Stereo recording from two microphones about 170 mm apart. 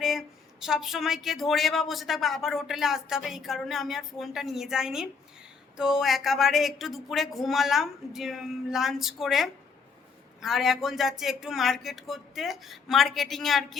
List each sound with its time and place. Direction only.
0.0 s speech: centre (ahead or behind)